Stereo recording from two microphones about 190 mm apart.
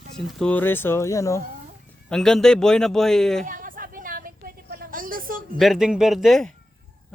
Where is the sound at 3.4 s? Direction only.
45° right (ahead or behind).